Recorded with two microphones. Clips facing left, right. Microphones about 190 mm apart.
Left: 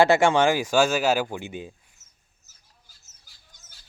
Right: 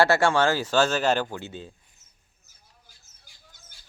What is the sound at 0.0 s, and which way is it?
Speech, 15° left (ahead or behind).